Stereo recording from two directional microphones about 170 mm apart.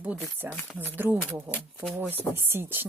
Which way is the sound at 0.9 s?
10° right (ahead or behind).